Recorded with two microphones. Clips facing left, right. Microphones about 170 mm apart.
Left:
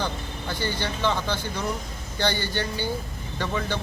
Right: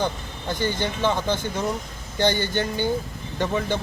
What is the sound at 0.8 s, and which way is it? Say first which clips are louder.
Speech: right 3 dB; 15° right (ahead or behind).